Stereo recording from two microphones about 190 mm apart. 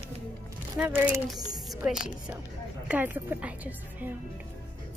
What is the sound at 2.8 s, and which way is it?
A woman's voice, 10° right (ahead or behind).